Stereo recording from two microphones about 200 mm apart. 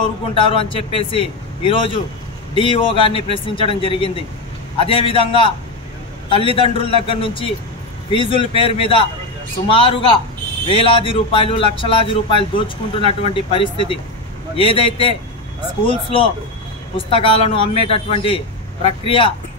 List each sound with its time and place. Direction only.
0.3 s speech: 25° left (ahead or behind)